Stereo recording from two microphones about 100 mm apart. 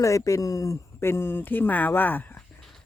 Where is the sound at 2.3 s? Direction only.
5° left (ahead or behind).